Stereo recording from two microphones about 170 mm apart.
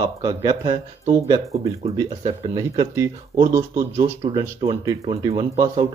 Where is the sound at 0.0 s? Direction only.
20° right (ahead or behind).